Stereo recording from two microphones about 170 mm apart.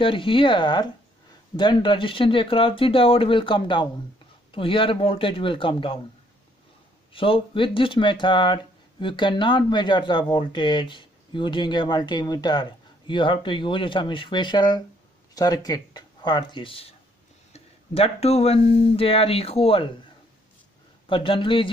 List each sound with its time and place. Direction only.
0.0 s speech: 30° left (ahead or behind)
7.1 s speech: 30° left (ahead or behind)
21.1 s speech: 30° left (ahead or behind)